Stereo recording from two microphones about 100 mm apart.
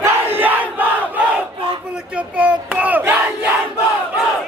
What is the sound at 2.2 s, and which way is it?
Battle cry, 15° right (ahead or behind).